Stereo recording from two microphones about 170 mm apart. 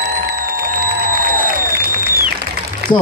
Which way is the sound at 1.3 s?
60° right (ahead or behind).